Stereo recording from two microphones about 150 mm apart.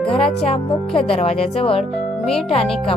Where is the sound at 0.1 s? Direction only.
40° left (ahead or behind).